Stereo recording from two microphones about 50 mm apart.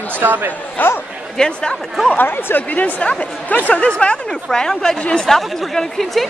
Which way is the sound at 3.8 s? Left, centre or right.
Left.